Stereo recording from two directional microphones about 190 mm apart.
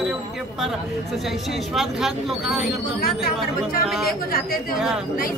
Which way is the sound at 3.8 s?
Centre (ahead or behind).